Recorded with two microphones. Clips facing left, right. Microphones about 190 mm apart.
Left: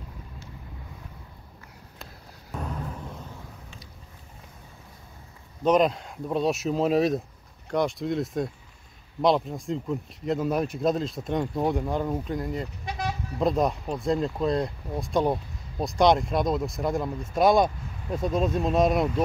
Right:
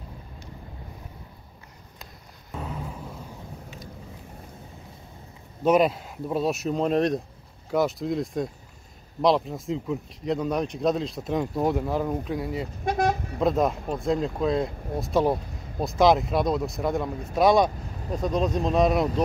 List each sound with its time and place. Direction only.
2.5 s a sound: 5° right (ahead or behind)
5.6 s speech: 5° right (ahead or behind)
12.8 s vehicle: 50° right (ahead or behind)
13.4 s speech: centre (ahead or behind)